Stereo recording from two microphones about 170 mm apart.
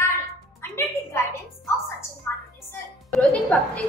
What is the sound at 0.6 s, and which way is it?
Music, 15° left (ahead or behind).